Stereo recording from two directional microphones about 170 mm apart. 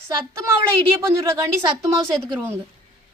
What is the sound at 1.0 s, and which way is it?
Speech, 15° right (ahead or behind).